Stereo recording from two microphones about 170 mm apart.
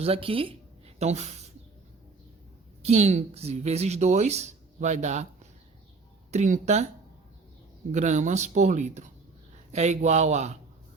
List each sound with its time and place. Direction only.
0.0 s speech: 35° right (ahead or behind)
2.8 s speech: 40° right (ahead or behind)
6.3 s speech: 45° right (ahead or behind)
7.9 s speech: 45° right (ahead or behind)